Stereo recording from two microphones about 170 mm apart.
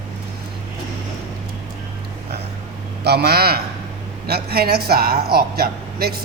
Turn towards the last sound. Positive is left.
turn(degrees=-65)  # may be behind; listen again after turning